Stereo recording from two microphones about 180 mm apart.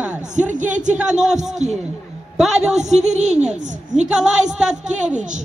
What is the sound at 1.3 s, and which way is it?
Speech, 40° right (ahead or behind).